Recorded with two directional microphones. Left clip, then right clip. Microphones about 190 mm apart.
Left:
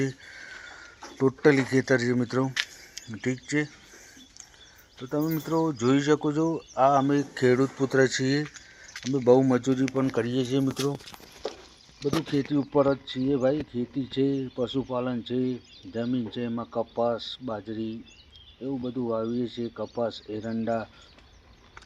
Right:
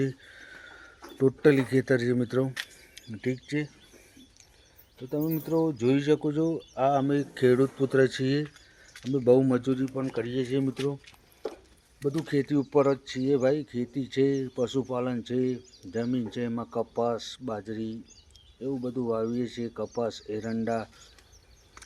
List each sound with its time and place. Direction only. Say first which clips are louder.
0.0 s speech: left 1 dB; 10° right (ahead or behind)
5.0 s speech: left 2 dB; 10° left (ahead or behind)
5.7 s speech: left 1 dB; 5° right (ahead or behind)
8.4 s a sound: left 6 dB; 25° right (ahead or behind)
9.1 s speech: left 2 dB; centre (ahead or behind)
9.9 s speech: left 5 dB; 40° left (ahead or behind)
10.3 s speech: left 2 dB; 20° left (ahead or behind)
12.2 s speech: even; 10° right (ahead or behind)